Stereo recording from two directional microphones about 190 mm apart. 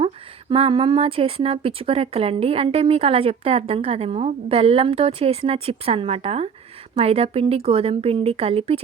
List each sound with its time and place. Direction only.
0.5 s a woman's voice: 30° right (ahead or behind)